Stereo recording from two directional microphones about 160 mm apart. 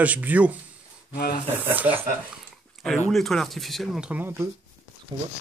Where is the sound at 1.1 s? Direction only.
70° left (ahead or behind).